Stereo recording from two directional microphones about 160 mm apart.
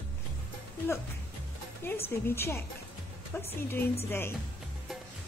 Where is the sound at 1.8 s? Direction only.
15° left (ahead or behind).